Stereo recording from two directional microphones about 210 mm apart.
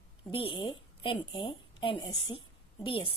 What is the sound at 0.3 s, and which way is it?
Speech, 25° left (ahead or behind).